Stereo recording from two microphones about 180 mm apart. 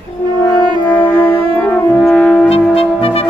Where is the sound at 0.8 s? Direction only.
10° left (ahead or behind).